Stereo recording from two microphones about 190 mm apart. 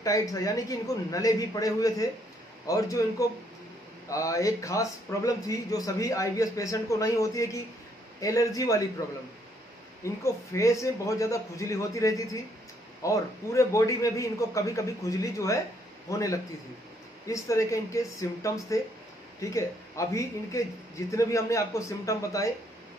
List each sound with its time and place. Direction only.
0.0 s a man's voice: 20° left (ahead or behind)
10.0 s a man's voice: 15° left (ahead or behind)